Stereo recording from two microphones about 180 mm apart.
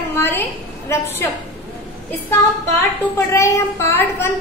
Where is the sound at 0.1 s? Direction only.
10° left (ahead or behind).